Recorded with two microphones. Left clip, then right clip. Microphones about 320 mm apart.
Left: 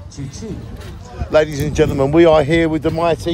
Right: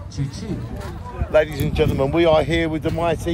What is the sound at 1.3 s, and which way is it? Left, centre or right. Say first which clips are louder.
Speech: left 3 dB; left.